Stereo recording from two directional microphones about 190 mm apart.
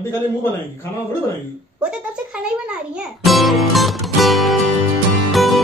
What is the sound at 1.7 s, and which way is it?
A child's voice, 5° right (ahead or behind).